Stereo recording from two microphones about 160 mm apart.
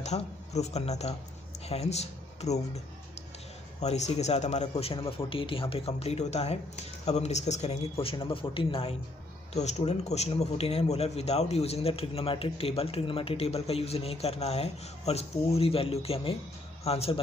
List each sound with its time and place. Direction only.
0.0 s a man's voice: 45° left (ahead or behind)
3.8 s a man's voice: 45° left (ahead or behind)
9.5 s a man's voice: 45° left (ahead or behind)